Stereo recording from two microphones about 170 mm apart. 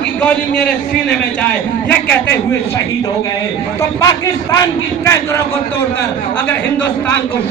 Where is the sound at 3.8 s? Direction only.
20° left (ahead or behind).